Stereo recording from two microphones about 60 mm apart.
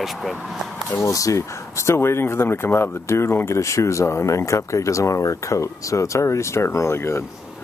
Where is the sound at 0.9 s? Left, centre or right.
Left.